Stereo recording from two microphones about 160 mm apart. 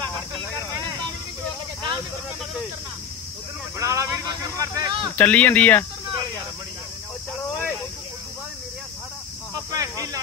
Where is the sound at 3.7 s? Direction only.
20° right (ahead or behind).